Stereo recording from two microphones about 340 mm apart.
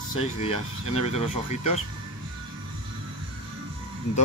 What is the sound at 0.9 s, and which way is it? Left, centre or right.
Speech, centre.